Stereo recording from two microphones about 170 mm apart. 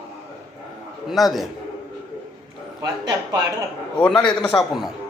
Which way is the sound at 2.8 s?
20° right (ahead or behind).